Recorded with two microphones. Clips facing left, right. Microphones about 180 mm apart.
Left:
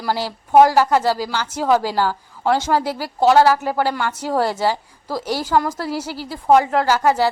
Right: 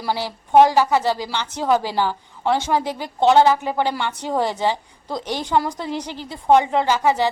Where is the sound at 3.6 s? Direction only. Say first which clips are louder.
Left 1 dB; 20° right (ahead or behind).